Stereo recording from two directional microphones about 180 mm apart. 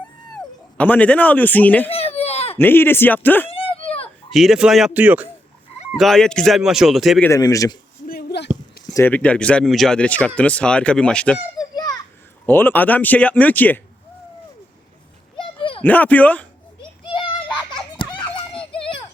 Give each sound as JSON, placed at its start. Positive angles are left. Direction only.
{"t": 0.3, "sound": "speech", "side_deg": 10}
{"t": 1.9, "sound": "baby cry", "side_deg": 35}
{"t": 2.6, "sound": "speech", "side_deg": 10}
{"t": 3.5, "sound": "a sound", "side_deg": 30}
{"t": 4.3, "sound": "speech", "side_deg": 0}
{"t": 5.9, "sound": "speech", "side_deg": 5}
{"t": 7.3, "sound": "a man's voice", "side_deg": 20}
{"t": 8.0, "sound": "a sound", "side_deg": 60}
{"t": 8.9, "sound": "speech", "side_deg": 15}
{"t": 11.5, "sound": "children playing", "side_deg": 20}
{"t": 12.5, "sound": "speech", "side_deg": 10}
{"t": 15.4, "sound": "a sound", "side_deg": 30}
{"t": 15.8, "sound": "speech", "side_deg": 10}
{"t": 17.1, "sound": "children playing", "side_deg": 30}